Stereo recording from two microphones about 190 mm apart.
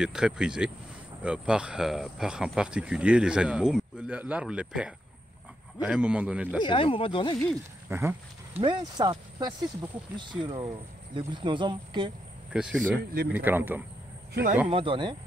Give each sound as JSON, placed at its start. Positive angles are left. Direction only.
{"t": 0.0, "sound": "speech", "side_deg": -5}
{"t": 6.6, "sound": "speech", "side_deg": 25}
{"t": 7.9, "sound": "speech", "side_deg": -10}
{"t": 8.5, "sound": "speech", "side_deg": -25}
{"t": 12.5, "sound": "speech", "side_deg": -5}
{"t": 14.3, "sound": "speech", "side_deg": -45}
{"t": 14.7, "sound": "speech", "side_deg": -30}